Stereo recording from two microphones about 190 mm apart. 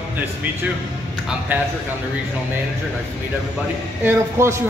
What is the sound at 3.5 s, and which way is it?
Speech, 10° right (ahead or behind).